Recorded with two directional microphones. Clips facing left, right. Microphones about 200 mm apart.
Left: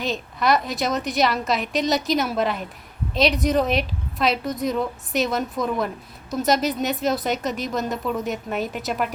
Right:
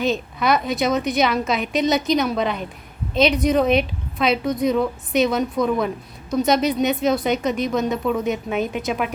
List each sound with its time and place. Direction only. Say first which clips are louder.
0.0 s a woman's voice: right 3 dB; centre (ahead or behind)